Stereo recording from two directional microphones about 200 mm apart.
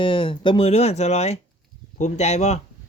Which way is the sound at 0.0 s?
25° left (ahead or behind).